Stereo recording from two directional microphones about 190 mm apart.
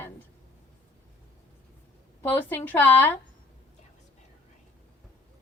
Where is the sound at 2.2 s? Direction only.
10° left (ahead or behind).